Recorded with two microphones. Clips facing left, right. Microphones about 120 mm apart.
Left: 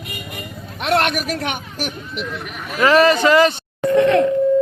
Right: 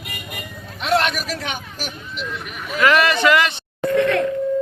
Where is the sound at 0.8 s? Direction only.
55° left (ahead or behind).